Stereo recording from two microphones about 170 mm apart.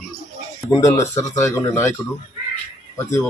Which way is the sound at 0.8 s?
20° left (ahead or behind).